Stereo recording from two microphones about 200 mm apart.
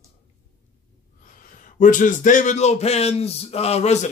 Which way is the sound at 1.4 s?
40° left (ahead or behind).